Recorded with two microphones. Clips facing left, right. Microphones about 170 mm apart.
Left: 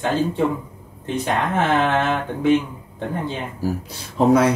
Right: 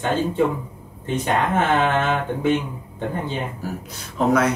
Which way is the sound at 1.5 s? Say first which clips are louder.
Left 2 dB; centre (ahead or behind).